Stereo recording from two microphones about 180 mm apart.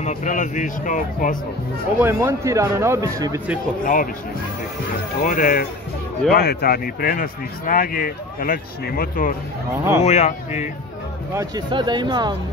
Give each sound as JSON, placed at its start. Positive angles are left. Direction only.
{"t": 0.0, "sound": "speech", "side_deg": 40}
{"t": 2.0, "sound": "speech", "side_deg": -15}
{"t": 3.8, "sound": "speech", "side_deg": 50}
{"t": 5.2, "sound": "speech", "side_deg": 45}
{"t": 10.0, "sound": "speech", "side_deg": 40}
{"t": 11.3, "sound": "speech", "side_deg": -25}